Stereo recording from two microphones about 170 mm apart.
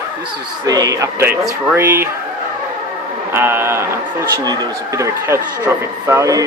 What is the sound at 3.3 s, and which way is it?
A man's voice, 15° right (ahead or behind).